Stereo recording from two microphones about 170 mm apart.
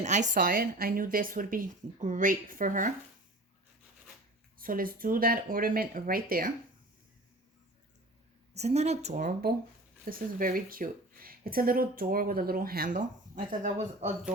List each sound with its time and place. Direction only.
0.0 s speech: 45° right (ahead or behind)
4.5 s speech: 55° right (ahead or behind)
8.5 s speech: 40° right (ahead or behind)